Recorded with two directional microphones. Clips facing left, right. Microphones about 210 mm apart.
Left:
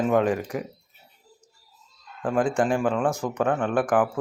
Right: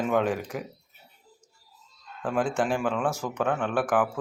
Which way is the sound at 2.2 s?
5° right (ahead or behind).